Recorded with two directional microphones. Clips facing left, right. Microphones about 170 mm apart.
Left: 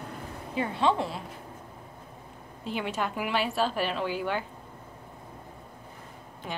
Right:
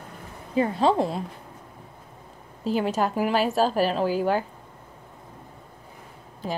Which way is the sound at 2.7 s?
40° right (ahead or behind).